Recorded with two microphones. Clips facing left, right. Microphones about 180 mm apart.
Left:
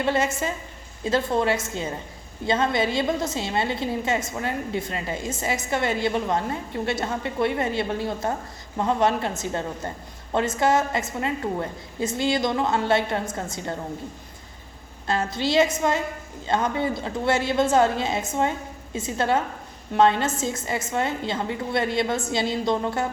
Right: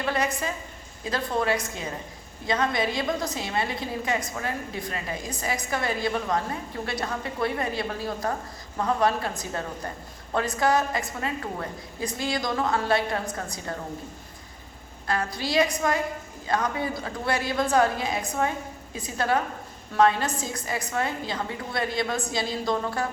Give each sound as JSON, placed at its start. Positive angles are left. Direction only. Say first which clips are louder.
{"t": 0.0, "sound": "a woman's voice", "louder": "left 3 dB", "side_deg": 25}
{"t": 15.0, "sound": "a woman's voice", "louder": "left 4 dB", "side_deg": 25}